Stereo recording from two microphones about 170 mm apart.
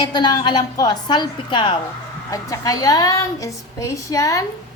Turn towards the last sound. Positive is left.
turn(degrees=20)  # may be behind; listen again after turning